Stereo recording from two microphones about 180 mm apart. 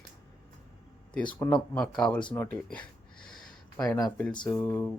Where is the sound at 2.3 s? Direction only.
10° left (ahead or behind).